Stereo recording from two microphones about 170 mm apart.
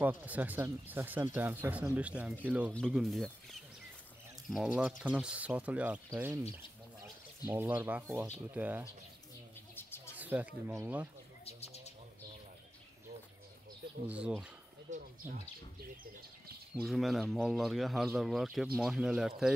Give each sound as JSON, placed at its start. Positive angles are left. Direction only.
{"t": 0.0, "sound": "speech", "side_deg": -10}
{"t": 7.4, "sound": "speech", "side_deg": -10}
{"t": 9.8, "sound": "bird", "side_deg": 15}
{"t": 10.1, "sound": "speech", "side_deg": -10}
{"t": 14.0, "sound": "speech", "side_deg": -5}
{"t": 14.9, "sound": "speech", "side_deg": -50}
{"t": 16.7, "sound": "speech", "side_deg": 0}